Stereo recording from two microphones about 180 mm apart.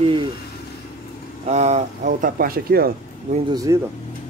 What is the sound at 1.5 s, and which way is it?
Speech, 40° right (ahead or behind).